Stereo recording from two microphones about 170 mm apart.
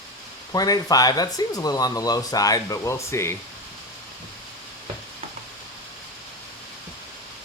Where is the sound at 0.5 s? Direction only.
20° left (ahead or behind).